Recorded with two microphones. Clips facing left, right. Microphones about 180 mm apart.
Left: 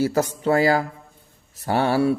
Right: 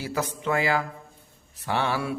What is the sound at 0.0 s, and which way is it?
Mantra, 40° left (ahead or behind).